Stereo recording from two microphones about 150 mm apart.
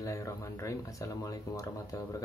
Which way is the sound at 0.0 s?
20° left (ahead or behind).